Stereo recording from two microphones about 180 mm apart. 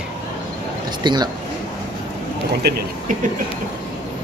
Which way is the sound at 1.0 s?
25° right (ahead or behind).